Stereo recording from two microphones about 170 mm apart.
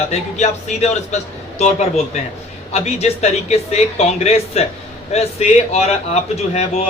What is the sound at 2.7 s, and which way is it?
A man's voice, 40° left (ahead or behind).